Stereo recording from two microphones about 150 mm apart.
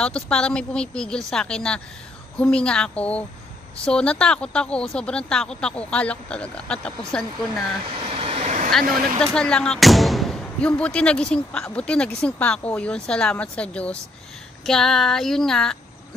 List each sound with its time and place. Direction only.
0.0 s speech: 5° left (ahead or behind)
7.8 s vehicle: 40° right (ahead or behind)
9.2 s speech: 5° left (ahead or behind)